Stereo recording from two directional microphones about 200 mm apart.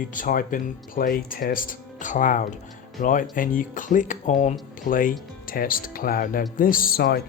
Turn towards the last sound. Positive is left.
turn(degrees=50)  # may be behind; listen again after turning